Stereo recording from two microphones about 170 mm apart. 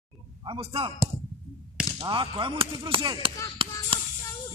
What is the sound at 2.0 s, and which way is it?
Chop, 25° right (ahead or behind).